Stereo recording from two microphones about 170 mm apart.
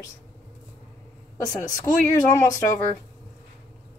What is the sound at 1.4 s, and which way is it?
Speech, 20° left (ahead or behind).